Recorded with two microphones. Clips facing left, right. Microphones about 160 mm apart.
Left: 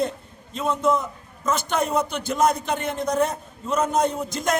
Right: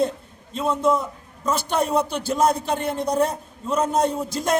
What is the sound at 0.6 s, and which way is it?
A man's voice, 30° right (ahead or behind).